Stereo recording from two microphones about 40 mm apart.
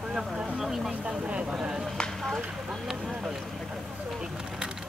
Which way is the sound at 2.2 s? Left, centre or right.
Centre.